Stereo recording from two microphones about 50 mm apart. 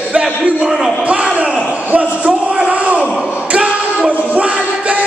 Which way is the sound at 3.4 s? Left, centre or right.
Right.